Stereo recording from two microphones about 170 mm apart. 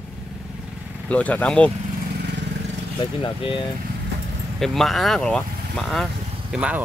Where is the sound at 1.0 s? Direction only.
10° left (ahead or behind).